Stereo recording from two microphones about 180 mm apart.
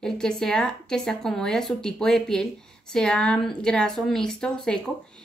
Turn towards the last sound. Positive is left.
turn(degrees=5)  # may be behind; listen again after turning